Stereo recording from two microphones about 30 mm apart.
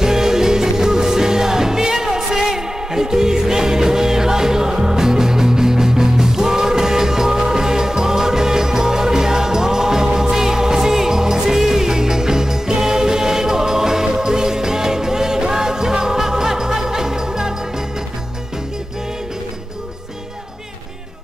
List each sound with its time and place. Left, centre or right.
0.0 s music: centre